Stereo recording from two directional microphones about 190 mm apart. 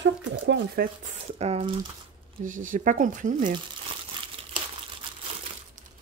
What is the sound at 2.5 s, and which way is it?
Speech, 40° right (ahead or behind).